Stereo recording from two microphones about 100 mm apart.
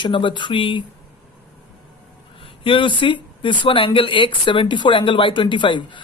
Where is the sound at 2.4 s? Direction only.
60° left (ahead or behind).